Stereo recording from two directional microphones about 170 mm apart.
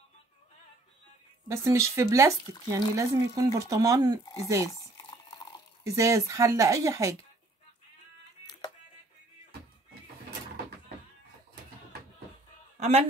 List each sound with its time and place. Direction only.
1.5 s speech: 15° right (ahead or behind)
4.6 s boiling: 20° left (ahead or behind)
5.9 s speech: 20° right (ahead or behind)
8.5 s music: 25° left (ahead or behind)
12.7 s a sound: 40° right (ahead or behind)